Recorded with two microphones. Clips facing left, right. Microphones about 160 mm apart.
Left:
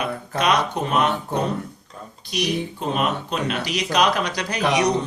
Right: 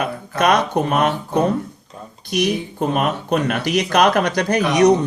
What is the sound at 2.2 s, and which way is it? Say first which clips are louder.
Speech: right 4 dB; 50° right (ahead or behind).